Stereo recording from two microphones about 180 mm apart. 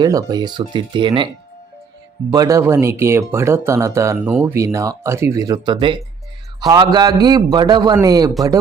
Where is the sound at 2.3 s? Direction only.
20° right (ahead or behind).